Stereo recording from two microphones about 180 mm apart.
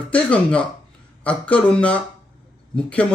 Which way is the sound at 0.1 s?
5° left (ahead or behind).